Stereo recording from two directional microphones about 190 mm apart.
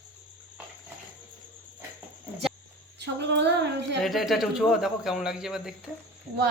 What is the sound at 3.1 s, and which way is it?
Female singing, 65° right (ahead or behind).